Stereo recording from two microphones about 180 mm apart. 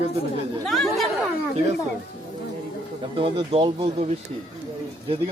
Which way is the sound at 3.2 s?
30° right (ahead or behind).